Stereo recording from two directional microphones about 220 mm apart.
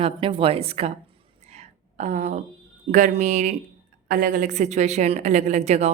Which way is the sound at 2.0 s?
30° right (ahead or behind).